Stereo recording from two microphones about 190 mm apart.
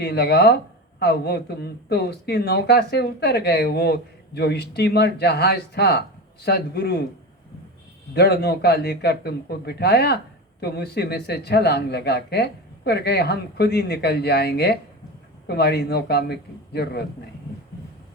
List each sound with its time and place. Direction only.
0.0 s speech: 55° left (ahead or behind)
8.1 s speech: 60° left (ahead or behind)